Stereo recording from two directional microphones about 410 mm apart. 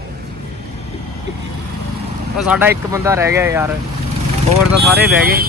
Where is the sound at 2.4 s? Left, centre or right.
Centre.